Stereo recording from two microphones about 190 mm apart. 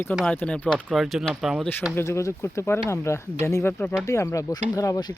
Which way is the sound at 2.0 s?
15° left (ahead or behind).